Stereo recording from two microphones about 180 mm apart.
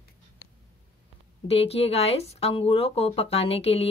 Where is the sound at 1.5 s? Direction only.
35° left (ahead or behind).